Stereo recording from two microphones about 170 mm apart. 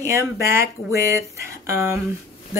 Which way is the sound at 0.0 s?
15° right (ahead or behind).